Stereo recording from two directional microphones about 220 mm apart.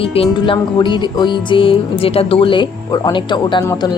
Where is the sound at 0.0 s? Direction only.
25° left (ahead or behind).